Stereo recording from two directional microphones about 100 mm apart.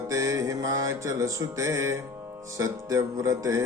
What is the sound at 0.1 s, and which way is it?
Music, 35° right (ahead or behind).